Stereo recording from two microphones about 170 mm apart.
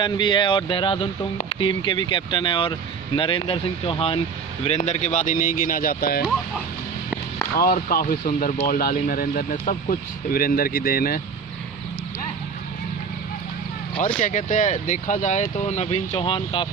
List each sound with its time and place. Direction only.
0.0 s speech: 25° left (ahead or behind); by 6.2 s 60° left (ahead or behind)
7.5 s speech: 60° left (ahead or behind)
14.2 s speech: 45° left (ahead or behind); by 16.6 s 30° left (ahead or behind)